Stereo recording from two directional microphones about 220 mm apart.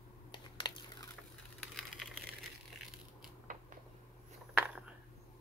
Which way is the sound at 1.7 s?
Centre (ahead or behind).